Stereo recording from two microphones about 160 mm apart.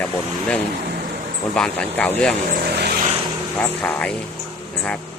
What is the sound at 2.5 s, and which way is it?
Speech, 80° right.